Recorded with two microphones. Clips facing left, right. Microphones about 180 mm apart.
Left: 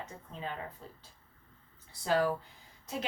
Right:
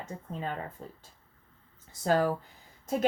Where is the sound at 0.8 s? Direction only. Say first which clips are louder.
Right 5 dB; 40° right (ahead or behind).